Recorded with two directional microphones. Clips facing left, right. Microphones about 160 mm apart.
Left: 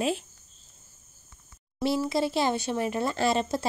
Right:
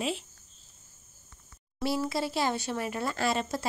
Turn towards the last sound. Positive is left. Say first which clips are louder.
# left 4 dB
turn(degrees=25)  # may be behind; listen again after turning